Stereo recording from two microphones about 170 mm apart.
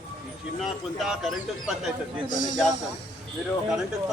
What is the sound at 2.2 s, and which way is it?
Speech, 50° left (ahead or behind).